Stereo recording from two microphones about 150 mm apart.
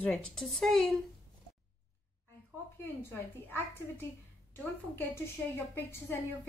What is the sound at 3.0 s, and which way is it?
A woman's voice, 15° left (ahead or behind).